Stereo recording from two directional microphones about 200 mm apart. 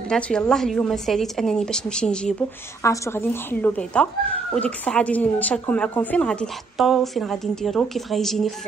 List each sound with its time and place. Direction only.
0.1 s speech: 5° left (ahead or behind)